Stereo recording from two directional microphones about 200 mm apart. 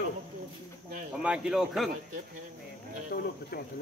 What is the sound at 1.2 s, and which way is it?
Speech, 5° right (ahead or behind).